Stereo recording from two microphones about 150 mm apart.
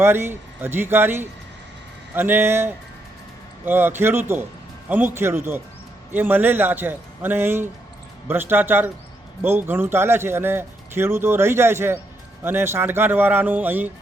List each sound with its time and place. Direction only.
0.0 s a man's voice: 15° right (ahead or behind)